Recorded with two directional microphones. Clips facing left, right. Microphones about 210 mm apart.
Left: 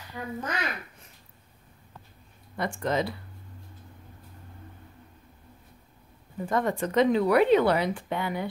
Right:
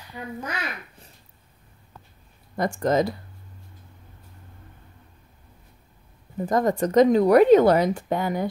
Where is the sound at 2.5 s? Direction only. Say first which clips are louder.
Right 6 dB; 40° right (ahead or behind).